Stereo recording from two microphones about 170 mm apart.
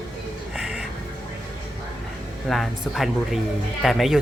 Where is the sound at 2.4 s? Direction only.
Centre (ahead or behind).